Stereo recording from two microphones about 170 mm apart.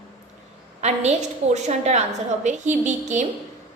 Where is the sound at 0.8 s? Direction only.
40° right (ahead or behind).